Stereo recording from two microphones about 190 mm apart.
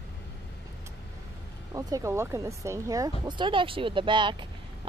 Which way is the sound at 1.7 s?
15° right (ahead or behind).